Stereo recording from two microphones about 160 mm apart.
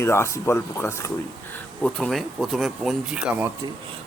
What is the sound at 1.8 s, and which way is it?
Speech, 5° left (ahead or behind).